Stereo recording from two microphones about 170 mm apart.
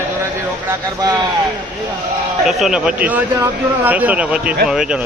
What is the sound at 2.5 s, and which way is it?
A man's voice, centre (ahead or behind).